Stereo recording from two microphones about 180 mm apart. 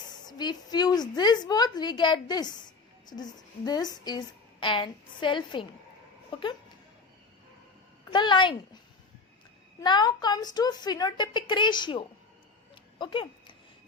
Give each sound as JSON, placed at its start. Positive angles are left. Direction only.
{"t": 0.3, "sound": "a woman's voice", "side_deg": 25}
{"t": 8.1, "sound": "a woman's voice", "side_deg": 25}
{"t": 9.8, "sound": "a woman's voice", "side_deg": 25}
{"t": 13.0, "sound": "a sound", "side_deg": 30}